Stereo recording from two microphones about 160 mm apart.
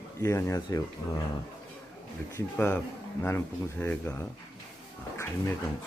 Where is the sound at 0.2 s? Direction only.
15° left (ahead or behind).